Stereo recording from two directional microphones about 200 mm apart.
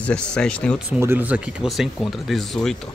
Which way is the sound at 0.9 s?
10° right (ahead or behind).